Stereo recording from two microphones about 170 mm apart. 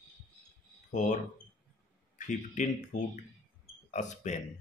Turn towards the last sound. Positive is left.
turn(degrees=45)  # may be behind; listen again after turning